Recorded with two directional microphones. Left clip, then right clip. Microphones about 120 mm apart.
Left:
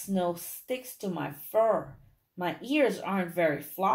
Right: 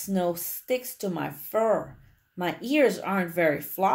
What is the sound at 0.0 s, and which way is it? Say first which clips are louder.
Speech: right 3 dB; 35° right (ahead or behind).